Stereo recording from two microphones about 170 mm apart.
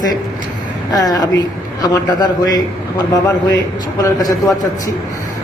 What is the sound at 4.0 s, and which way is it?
Speech, 20° left (ahead or behind).